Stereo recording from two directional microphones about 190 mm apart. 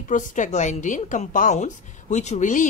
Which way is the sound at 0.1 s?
45° left (ahead or behind).